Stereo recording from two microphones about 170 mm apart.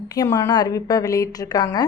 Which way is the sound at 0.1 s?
20° left (ahead or behind).